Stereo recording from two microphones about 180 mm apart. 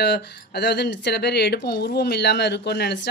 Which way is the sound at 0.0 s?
65° left (ahead or behind).